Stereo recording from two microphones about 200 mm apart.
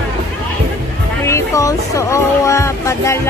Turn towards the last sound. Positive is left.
turn(degrees=15)  # may be behind; listen again after turning